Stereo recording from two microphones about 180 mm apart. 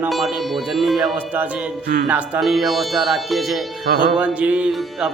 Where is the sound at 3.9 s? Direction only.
55° right (ahead or behind).